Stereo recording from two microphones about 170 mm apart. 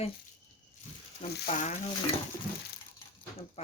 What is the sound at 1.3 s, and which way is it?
Speech, 70° left (ahead or behind).